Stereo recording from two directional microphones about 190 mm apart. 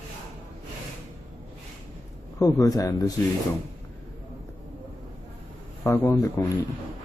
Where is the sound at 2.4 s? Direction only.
20° left (ahead or behind).